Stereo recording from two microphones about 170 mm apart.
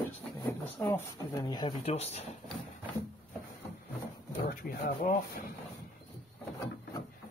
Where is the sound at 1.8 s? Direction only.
35° left (ahead or behind).